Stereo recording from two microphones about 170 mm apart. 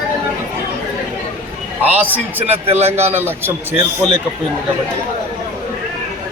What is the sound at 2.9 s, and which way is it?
Speech, 15° right (ahead or behind).